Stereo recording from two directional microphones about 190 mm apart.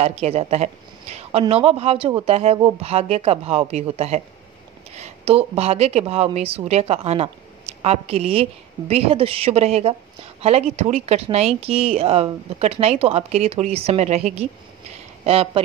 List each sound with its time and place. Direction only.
0.0 s speech: 35° right (ahead or behind)